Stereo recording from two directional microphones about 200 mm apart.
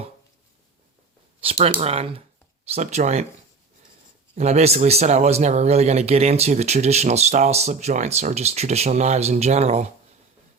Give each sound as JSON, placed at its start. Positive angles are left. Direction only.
{"t": 1.4, "sound": "a sound", "side_deg": -30}
{"t": 1.7, "sound": "speech", "side_deg": -30}
{"t": 4.4, "sound": "speech", "side_deg": -35}